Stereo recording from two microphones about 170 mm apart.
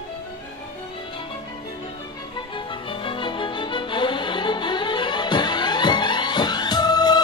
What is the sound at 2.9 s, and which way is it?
Music, 30° left (ahead or behind).